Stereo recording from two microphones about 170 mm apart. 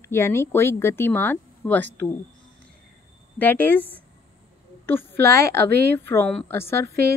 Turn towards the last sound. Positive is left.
turn(degrees=-65)  # may be behind; listen again after turning